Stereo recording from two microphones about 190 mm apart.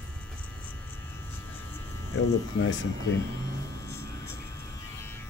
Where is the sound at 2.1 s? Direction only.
85° left.